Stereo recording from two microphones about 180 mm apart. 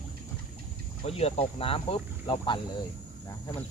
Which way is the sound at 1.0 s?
35° left (ahead or behind).